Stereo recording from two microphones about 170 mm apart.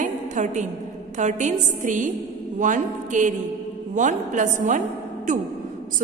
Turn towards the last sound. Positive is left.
turn(degrees=-50)  # may be behind; listen again after turning